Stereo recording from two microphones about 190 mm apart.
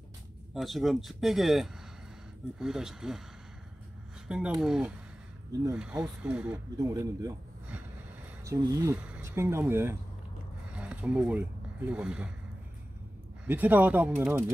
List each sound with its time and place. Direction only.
0.6 s speech: centre (ahead or behind)
4.3 s speech: 5° right (ahead or behind)
6.8 s a man's voice: 20° right (ahead or behind)
7.7 s vehicle: 10° right (ahead or behind)
8.5 s speech: 15° right (ahead or behind)
13.5 s speech: 10° right (ahead or behind)